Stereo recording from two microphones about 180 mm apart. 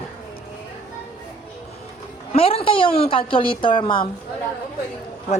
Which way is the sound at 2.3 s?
30° left (ahead or behind).